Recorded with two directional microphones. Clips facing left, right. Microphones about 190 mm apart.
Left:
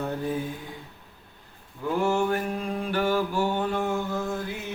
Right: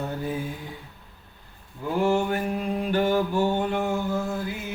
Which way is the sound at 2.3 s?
20° right (ahead or behind).